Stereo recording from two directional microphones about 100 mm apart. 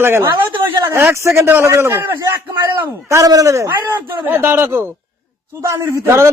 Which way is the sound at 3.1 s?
35° right (ahead or behind).